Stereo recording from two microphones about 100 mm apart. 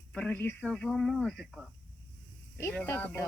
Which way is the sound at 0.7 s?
5° left (ahead or behind).